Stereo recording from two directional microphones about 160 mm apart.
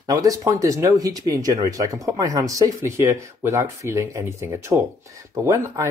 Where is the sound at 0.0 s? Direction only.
20° right (ahead or behind).